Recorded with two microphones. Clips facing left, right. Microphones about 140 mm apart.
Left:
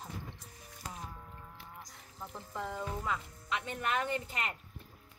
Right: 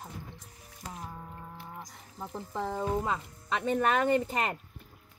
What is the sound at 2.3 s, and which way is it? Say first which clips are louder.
A woman's voice: right 6 dB; 35° right (ahead or behind).